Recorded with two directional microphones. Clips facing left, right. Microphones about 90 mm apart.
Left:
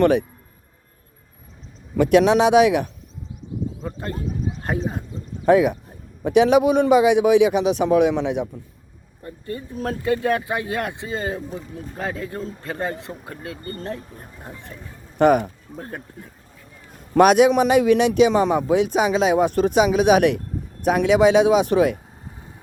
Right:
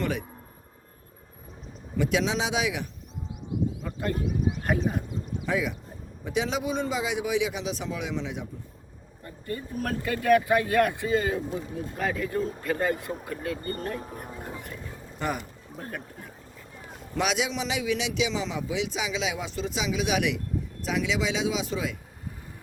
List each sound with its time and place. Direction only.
2.0 s a man's voice: 60° left (ahead or behind)
3.8 s a sound: 35° left (ahead or behind)
4.5 s horse: 30° left (ahead or behind)
5.5 s a man's voice: 60° left (ahead or behind)
9.2 s speech: 30° left (ahead or behind)
15.2 s a man's voice: 60° left (ahead or behind)
15.8 s speech: 30° left (ahead or behind)
17.2 s a man's voice: 55° left (ahead or behind)